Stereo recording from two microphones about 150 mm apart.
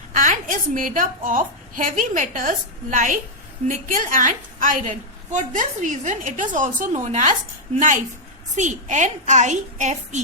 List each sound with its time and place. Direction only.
0.1 s a woman's voice: 60° right (ahead or behind)